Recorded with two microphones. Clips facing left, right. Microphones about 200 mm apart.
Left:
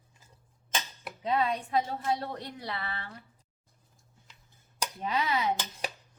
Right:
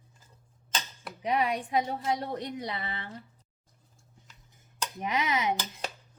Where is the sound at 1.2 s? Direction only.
15° right (ahead or behind).